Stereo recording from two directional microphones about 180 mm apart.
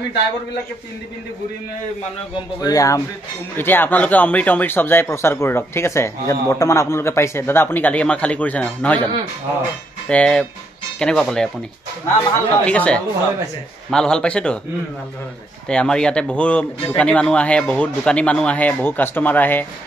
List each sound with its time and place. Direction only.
2.6 s speech: 20° left (ahead or behind)
10.0 s a man's voice: 5° left (ahead or behind)
15.7 s speech: 5° left (ahead or behind)